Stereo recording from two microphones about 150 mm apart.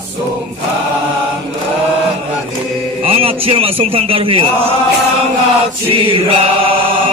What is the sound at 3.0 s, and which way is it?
A man's voice, 40° right (ahead or behind).